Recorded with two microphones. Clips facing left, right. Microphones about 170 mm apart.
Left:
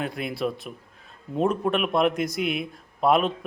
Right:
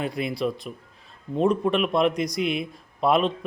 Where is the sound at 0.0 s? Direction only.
Centre (ahead or behind).